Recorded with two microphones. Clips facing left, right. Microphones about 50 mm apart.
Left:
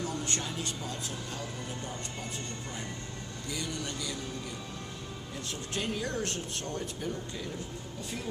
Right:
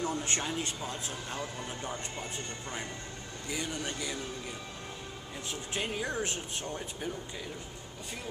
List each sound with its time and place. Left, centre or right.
0.0 s speech: right
3.4 s speech: right
5.5 s speech: centre